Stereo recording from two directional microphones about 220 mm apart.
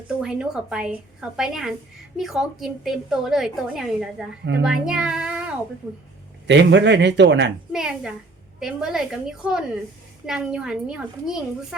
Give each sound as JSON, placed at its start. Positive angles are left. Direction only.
{"t": 0.2, "sound": "a woman's voice", "side_deg": -5}
{"t": 4.6, "sound": "music", "side_deg": -5}
{"t": 6.5, "sound": "speech", "side_deg": -55}
{"t": 7.7, "sound": "a woman's voice", "side_deg": -5}